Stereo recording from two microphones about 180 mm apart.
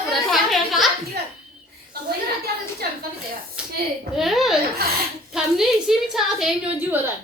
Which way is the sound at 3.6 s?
5° right (ahead or behind).